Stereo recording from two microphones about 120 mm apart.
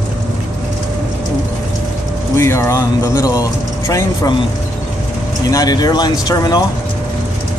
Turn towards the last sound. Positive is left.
turn(degrees=35)  # may be behind; listen again after turning